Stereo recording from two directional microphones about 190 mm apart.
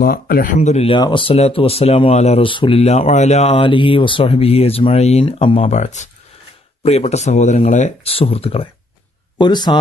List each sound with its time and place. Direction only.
0.0 s speech: 50° left (ahead or behind); by 9.8 s 25° left (ahead or behind)